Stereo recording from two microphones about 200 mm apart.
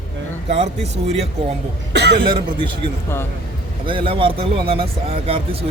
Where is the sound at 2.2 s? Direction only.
25° right (ahead or behind).